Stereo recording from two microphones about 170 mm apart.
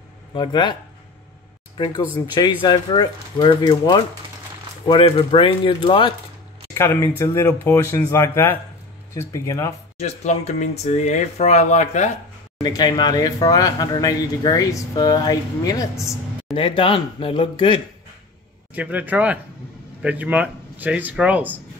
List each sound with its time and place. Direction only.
0.3 s speech: 25° left (ahead or behind)
1.8 s speech: 20° left (ahead or behind)
4.8 s speech: 30° left (ahead or behind)
6.7 s speech: 15° left (ahead or behind)
9.9 s speech: 40° left (ahead or behind)
12.6 s speech: 20° left (ahead or behind)
16.5 s speech: 30° left (ahead or behind)
18.8 s speech: 10° right (ahead or behind)